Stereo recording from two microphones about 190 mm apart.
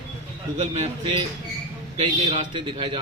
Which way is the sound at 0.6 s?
30° right (ahead or behind).